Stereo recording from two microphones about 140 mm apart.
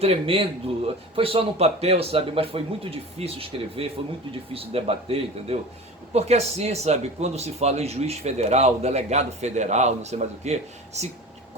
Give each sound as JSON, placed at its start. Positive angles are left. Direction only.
{"t": 0.0, "sound": "speech", "side_deg": -45}